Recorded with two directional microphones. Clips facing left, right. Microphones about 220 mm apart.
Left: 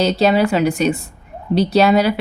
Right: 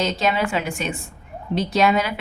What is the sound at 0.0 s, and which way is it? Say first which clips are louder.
A woman's voice: left 7 dB; 35° left (ahead or behind).